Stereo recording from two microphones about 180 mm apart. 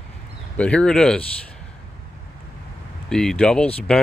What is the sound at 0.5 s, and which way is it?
Speech, 5° left (ahead or behind).